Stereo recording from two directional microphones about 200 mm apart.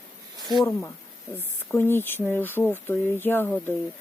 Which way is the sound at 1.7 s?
10° left (ahead or behind).